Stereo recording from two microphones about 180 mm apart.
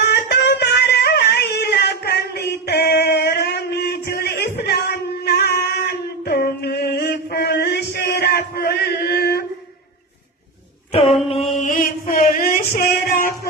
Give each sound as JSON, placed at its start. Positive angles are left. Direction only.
{"t": 0.1, "sound": "music", "side_deg": 65}
{"t": 11.1, "sound": "mantra", "side_deg": 35}
{"t": 11.6, "sound": "a sound", "side_deg": 50}